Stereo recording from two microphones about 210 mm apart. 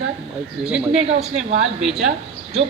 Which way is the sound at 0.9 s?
30° right (ahead or behind).